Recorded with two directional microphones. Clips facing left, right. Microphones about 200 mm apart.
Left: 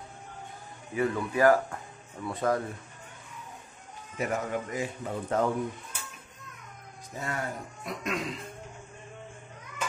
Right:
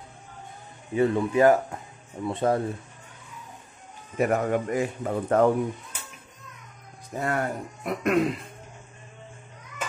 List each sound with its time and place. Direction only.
0.9 s speech: 25° right (ahead or behind)
4.2 s a man's voice: 60° right (ahead or behind)
7.2 s a man's voice: 60° right (ahead or behind)